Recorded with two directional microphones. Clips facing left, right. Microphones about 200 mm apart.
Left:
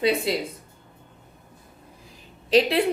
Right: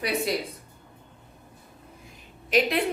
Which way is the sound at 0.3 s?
25° left (ahead or behind).